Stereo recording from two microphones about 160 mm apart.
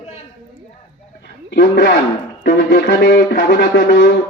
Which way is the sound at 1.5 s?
90° left.